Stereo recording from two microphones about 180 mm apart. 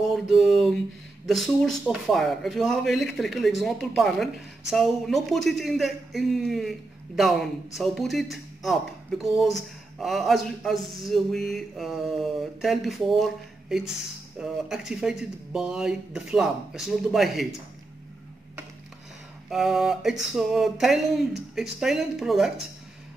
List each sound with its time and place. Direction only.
0.0 s a sound: centre (ahead or behind)
1.2 s speech: centre (ahead or behind)
19.5 s speech: centre (ahead or behind)